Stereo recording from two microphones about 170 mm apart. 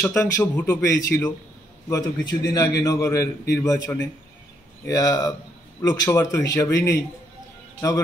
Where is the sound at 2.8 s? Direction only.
20° left (ahead or behind).